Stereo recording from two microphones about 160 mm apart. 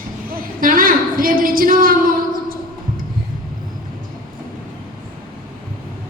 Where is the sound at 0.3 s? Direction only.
60° right (ahead or behind).